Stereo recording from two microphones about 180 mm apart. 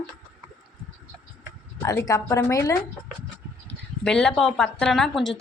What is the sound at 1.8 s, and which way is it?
Speech, 20° left (ahead or behind).